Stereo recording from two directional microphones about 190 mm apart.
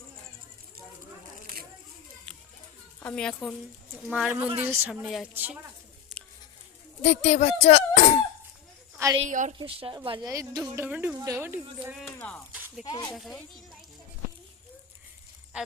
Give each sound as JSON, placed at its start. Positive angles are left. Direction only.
{"t": 3.0, "sound": "a child's voice", "side_deg": 5}
{"t": 4.1, "sound": "speech", "side_deg": -5}
{"t": 6.1, "sound": "a sound", "side_deg": 0}
{"t": 7.0, "sound": "speech", "side_deg": 35}
{"t": 9.3, "sound": "a woman's voice", "side_deg": -40}
{"t": 9.6, "sound": "a woman's voice", "side_deg": -25}
{"t": 10.8, "sound": "speech", "side_deg": -5}
{"t": 12.5, "sound": "a sound", "side_deg": -10}
{"t": 12.8, "sound": "speech", "side_deg": 20}
{"t": 13.1, "sound": "a child's voice", "side_deg": 0}
{"t": 15.5, "sound": "a sound", "side_deg": -5}